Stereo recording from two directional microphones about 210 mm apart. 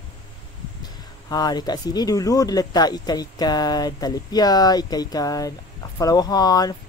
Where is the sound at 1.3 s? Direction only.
20° left (ahead or behind).